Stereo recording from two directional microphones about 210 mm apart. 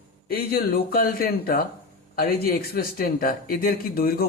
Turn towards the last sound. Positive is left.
turn(degrees=45)  # may be behind; listen again after turning